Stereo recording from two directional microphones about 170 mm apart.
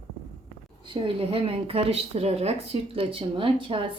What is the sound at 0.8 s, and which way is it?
A woman's voice, 30° right (ahead or behind).